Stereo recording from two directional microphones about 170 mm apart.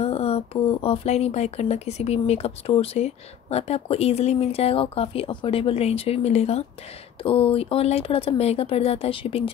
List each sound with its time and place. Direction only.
0.0 s speech: 35° left (ahead or behind)